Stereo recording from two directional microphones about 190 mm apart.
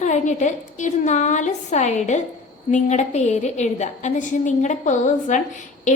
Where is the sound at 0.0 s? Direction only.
40° left (ahead or behind).